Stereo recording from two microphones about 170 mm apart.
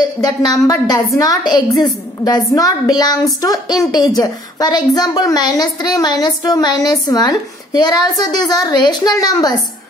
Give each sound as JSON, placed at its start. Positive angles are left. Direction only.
{"t": 0.0, "sound": "a woman's voice", "side_deg": 20}